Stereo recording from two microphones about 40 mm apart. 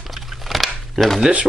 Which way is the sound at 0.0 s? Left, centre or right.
Centre.